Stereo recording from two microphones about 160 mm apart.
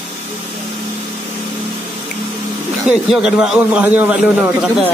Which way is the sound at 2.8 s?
5° right (ahead or behind).